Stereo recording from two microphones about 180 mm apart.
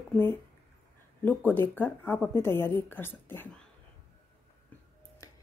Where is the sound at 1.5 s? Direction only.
10° left (ahead or behind).